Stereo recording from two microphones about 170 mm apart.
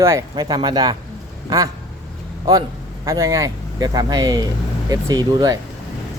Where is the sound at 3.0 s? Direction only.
20° right (ahead or behind).